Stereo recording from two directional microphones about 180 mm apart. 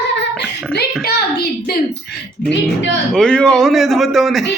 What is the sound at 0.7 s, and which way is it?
A woman's voice, 65° left (ahead or behind).